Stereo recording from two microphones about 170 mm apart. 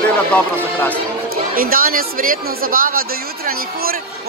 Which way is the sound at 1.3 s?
60° right (ahead or behind).